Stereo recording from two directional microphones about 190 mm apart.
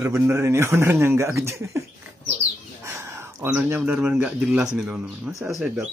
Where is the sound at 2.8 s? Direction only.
15° right (ahead or behind).